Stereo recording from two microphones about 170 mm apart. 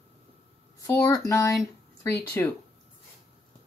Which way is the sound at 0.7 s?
15° left (ahead or behind).